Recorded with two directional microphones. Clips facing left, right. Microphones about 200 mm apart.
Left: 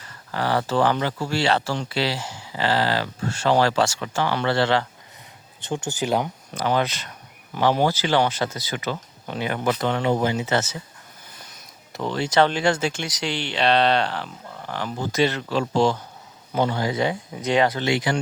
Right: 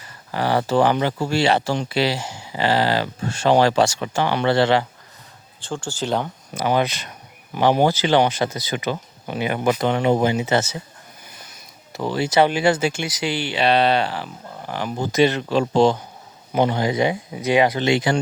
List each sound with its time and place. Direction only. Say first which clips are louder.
0.0 s speech: right 3 dB; 15° right (ahead or behind)
5.5 s speech: left 1 dB; 20° left (ahead or behind)
6.5 s speech: right 3 dB; 10° right (ahead or behind)
11.9 s speech: right 2 dB; 5° right (ahead or behind); by 18.2 s 25° right (ahead or behind)